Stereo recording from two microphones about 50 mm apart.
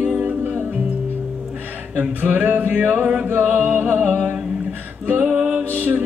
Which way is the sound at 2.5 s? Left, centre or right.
Right.